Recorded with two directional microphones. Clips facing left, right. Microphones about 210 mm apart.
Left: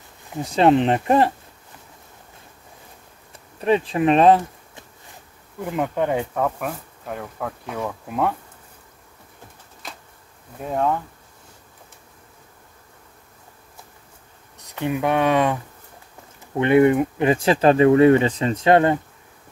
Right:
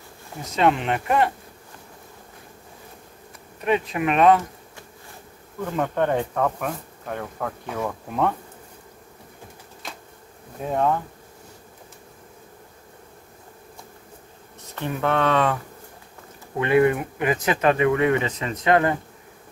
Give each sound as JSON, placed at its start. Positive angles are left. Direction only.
{"t": 0.4, "sound": "speech", "side_deg": 30}
{"t": 3.6, "sound": "speech", "side_deg": 30}
{"t": 5.6, "sound": "speech", "side_deg": 10}
{"t": 10.7, "sound": "speech", "side_deg": 0}
{"t": 14.6, "sound": "speech", "side_deg": 15}